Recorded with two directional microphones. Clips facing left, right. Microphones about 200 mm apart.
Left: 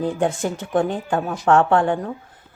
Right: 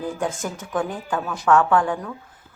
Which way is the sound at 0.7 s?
30° left (ahead or behind).